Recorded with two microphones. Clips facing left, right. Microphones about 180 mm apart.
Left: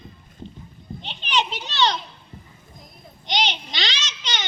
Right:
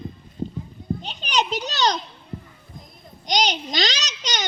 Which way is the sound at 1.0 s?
40° right (ahead or behind).